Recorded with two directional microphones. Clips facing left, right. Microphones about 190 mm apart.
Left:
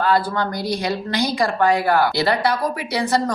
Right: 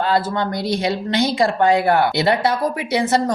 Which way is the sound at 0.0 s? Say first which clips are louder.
Even; 25° right (ahead or behind).